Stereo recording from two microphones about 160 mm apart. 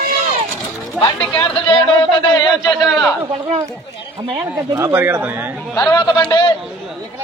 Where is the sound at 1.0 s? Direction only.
10° left (ahead or behind).